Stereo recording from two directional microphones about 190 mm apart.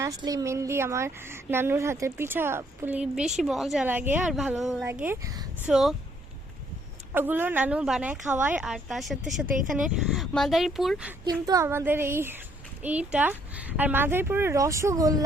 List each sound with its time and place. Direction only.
0.0 s a woman's voice: 20° right (ahead or behind); by 4.9 s centre (ahead or behind)
4.9 s a woman's voice: 10° right (ahead or behind)
5.6 s speech: centre (ahead or behind)
7.1 s a woman's voice: 10° right (ahead or behind)
11.3 s a woman's voice: 20° right (ahead or behind)